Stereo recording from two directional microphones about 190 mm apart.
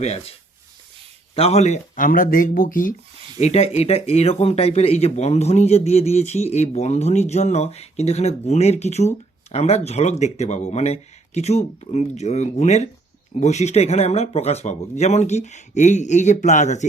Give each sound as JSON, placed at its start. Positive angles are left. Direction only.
{"t": 0.0, "sound": "speech", "side_deg": 35}
{"t": 1.4, "sound": "speech", "side_deg": 35}
{"t": 3.4, "sound": "speech", "side_deg": 35}